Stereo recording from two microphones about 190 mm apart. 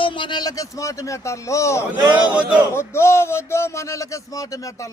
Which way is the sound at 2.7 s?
15° left (ahead or behind).